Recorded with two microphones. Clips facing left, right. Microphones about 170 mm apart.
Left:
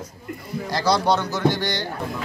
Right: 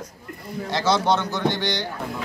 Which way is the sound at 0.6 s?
Centre (ahead or behind).